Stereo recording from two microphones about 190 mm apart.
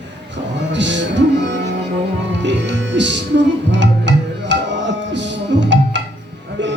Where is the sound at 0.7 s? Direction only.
70° right (ahead or behind).